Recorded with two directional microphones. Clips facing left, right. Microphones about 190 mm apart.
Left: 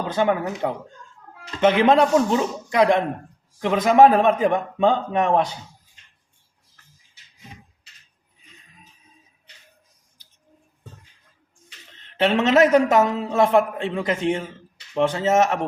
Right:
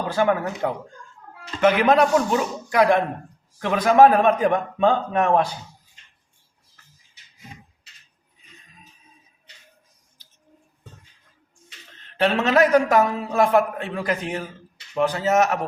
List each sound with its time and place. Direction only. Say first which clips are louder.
0.1 s a man's voice: even; 20° left (ahead or behind)
12.1 s a man's voice: left 2 dB; 20° left (ahead or behind)